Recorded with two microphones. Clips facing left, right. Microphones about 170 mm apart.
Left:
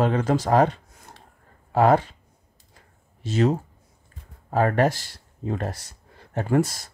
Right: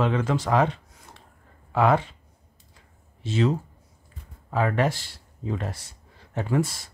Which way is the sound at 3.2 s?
45° left (ahead or behind).